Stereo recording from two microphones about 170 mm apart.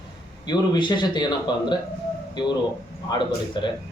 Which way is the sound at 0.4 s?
25° left (ahead or behind).